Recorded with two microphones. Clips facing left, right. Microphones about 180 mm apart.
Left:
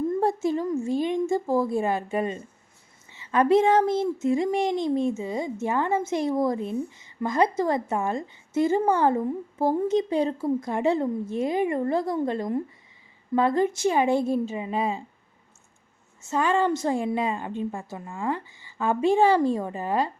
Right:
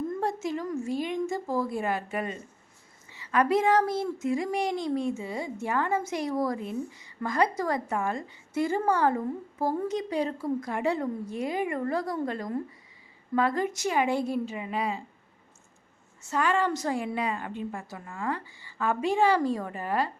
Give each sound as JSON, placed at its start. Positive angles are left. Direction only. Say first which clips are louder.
{"t": 0.1, "sound": "a woman's voice", "louder": "left 6 dB", "side_deg": 30}
{"t": 16.2, "sound": "a woman's voice", "louder": "left 3 dB", "side_deg": 25}